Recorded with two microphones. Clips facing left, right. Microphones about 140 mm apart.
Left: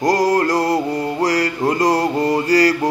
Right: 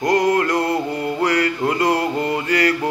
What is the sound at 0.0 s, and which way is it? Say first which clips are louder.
Mantra: left 1 dB; 35° left (ahead or behind).